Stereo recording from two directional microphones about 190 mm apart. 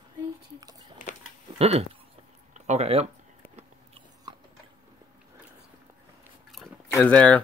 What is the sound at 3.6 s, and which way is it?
Biting, 30° right (ahead or behind).